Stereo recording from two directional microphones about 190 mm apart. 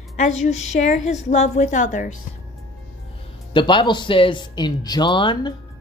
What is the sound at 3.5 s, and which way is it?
Speech, 25° left (ahead or behind).